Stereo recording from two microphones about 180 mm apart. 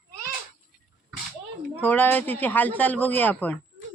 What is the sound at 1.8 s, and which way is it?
Speech, 10° left (ahead or behind).